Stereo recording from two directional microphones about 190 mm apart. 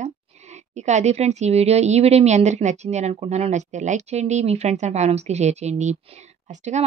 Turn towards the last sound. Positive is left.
turn(degrees=-40)  # may be behind; listen again after turning